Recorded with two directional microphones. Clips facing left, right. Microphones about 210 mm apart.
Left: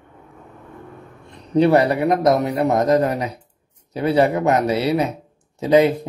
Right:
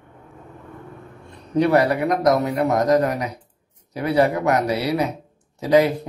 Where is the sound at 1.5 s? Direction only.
25° left (ahead or behind).